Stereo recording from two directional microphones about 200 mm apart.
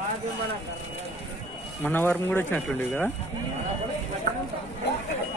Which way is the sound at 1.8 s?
10° left (ahead or behind).